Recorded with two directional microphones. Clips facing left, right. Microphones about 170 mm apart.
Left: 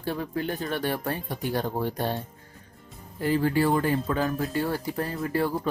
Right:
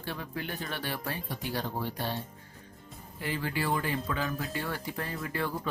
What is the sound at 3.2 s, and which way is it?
Speech, 45° left (ahead or behind).